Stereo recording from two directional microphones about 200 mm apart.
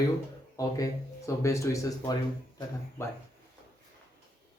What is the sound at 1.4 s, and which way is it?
Speech, 15° left (ahead or behind).